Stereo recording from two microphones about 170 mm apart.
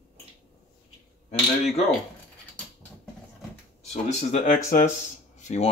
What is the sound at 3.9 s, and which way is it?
Speech, 45° left (ahead or behind).